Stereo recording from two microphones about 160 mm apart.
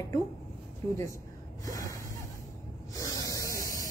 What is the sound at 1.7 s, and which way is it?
Gasp, 20° left (ahead or behind).